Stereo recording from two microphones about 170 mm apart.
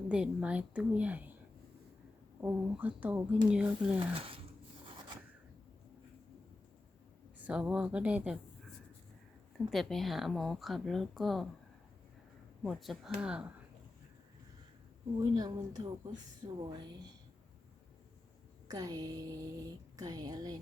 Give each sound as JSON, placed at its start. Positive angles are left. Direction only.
{"t": 0.1, "sound": "speech", "side_deg": -5}
{"t": 2.4, "sound": "speech", "side_deg": -10}
{"t": 4.1, "sound": "speech", "side_deg": -30}
{"t": 7.3, "sound": "speech", "side_deg": -10}
{"t": 9.6, "sound": "speech", "side_deg": 0}
{"t": 12.6, "sound": "speech", "side_deg": 0}
{"t": 15.4, "sound": "speech", "side_deg": -25}
{"t": 18.7, "sound": "speech", "side_deg": -20}